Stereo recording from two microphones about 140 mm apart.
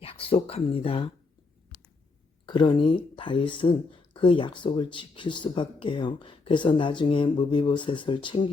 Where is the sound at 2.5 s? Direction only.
35° left (ahead or behind).